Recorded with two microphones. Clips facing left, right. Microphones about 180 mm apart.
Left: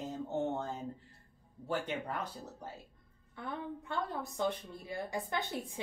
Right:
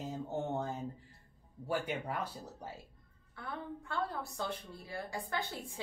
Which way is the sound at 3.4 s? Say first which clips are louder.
Left 2 dB; 20° left (ahead or behind).